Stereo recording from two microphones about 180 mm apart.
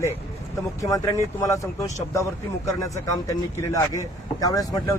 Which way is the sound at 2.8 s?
15° left (ahead or behind).